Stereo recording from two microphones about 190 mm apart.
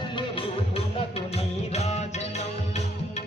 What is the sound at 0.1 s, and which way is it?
Music, 30° left (ahead or behind).